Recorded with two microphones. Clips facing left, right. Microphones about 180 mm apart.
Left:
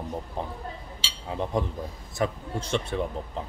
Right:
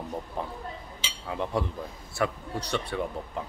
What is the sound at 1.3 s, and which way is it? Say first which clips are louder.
Speech: left 1 dB; 20° left (ahead or behind).